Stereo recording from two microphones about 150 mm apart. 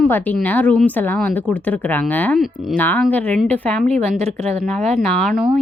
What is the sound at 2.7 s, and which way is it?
A woman's voice, 10° left (ahead or behind).